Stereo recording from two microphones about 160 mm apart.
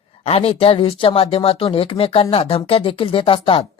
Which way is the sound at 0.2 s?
40° left (ahead or behind).